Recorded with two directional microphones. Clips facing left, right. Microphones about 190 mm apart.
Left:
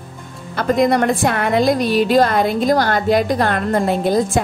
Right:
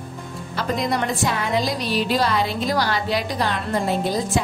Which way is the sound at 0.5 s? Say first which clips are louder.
Left 8 dB; 55° left (ahead or behind).